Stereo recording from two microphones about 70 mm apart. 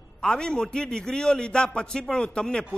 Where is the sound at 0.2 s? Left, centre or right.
Centre.